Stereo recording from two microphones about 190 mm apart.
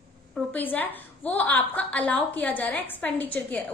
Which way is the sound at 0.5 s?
10° left (ahead or behind).